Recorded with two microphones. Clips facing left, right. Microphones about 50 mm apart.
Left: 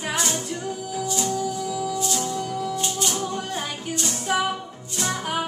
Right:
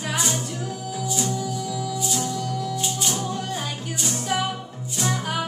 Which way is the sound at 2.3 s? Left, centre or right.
Left.